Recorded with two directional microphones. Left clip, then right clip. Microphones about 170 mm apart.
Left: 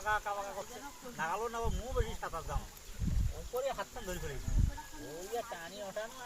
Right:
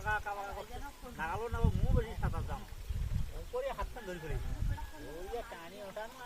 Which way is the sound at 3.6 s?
40° left (ahead or behind).